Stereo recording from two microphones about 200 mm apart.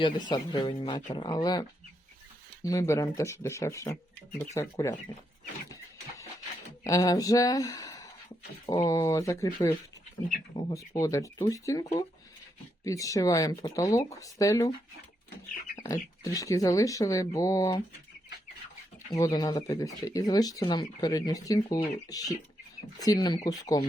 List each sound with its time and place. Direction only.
0.0 s speech: 20° left (ahead or behind)
2.6 s speech: 15° left (ahead or behind)
6.8 s speech: 15° left (ahead or behind)
15.7 s bird: 15° left (ahead or behind)
16.2 s speech: 15° left (ahead or behind)
19.1 s speech: 15° left (ahead or behind)